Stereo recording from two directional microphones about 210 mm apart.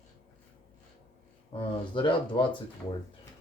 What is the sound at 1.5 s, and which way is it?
Speech, 25° left (ahead or behind).